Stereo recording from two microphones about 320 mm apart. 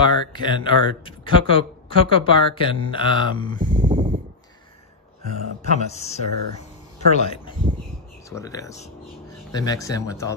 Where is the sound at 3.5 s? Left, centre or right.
Right.